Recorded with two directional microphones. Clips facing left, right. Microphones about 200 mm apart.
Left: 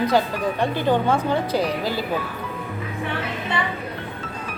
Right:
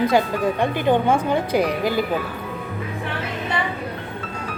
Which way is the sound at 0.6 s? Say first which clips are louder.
Right 1 dB; 15° right (ahead or behind).